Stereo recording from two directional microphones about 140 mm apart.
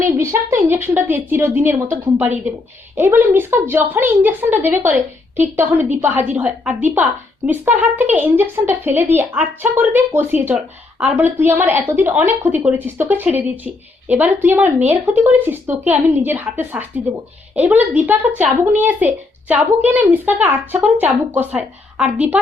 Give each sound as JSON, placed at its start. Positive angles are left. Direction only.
{"t": 0.2, "sound": "a woman's voice", "side_deg": -20}